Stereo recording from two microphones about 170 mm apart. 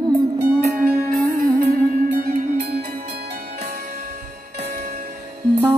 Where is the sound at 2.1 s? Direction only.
65° right (ahead or behind).